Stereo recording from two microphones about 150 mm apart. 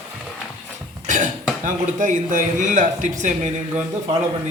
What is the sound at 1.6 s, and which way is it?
Speech, 60° right (ahead or behind).